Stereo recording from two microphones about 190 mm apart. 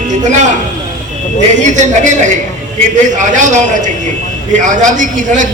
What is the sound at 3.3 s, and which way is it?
A man's voice, 40° right (ahead or behind).